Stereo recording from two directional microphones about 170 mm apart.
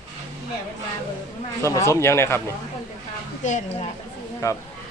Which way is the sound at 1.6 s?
15° left (ahead or behind).